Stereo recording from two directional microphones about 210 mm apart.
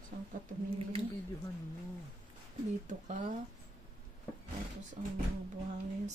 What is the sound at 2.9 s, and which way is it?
Speech, 35° right (ahead or behind).